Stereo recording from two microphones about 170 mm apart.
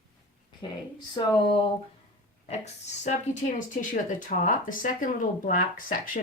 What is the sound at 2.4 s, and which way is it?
Speech, 40° left (ahead or behind).